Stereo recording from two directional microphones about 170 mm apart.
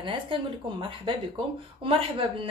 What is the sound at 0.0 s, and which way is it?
A woman's voice, 30° right (ahead or behind).